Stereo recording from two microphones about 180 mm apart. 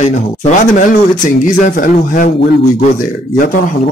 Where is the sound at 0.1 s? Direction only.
40° left (ahead or behind).